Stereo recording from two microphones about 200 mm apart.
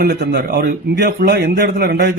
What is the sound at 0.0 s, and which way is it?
Speech, 55° right (ahead or behind).